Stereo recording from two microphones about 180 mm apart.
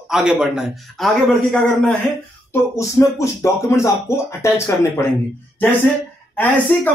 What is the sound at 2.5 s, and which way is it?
Speech, 15° left (ahead or behind).